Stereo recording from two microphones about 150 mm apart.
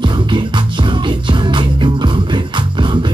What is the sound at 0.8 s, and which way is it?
Music, 30° right (ahead or behind).